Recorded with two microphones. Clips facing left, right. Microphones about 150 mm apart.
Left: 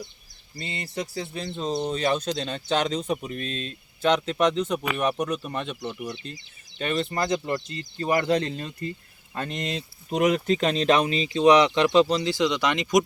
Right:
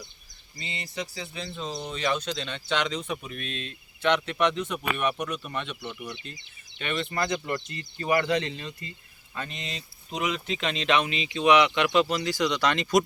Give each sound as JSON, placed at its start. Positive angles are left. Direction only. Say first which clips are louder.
{"t": 0.6, "sound": "speech", "louder": "left 3 dB", "side_deg": 50}
{"t": 1.5, "sound": "speech", "louder": "left 8 dB", "side_deg": 35}
{"t": 9.3, "sound": "speech", "louder": "left 7 dB", "side_deg": 50}